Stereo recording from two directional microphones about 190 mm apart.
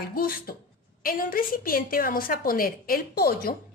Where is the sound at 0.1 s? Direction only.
50° left (ahead or behind).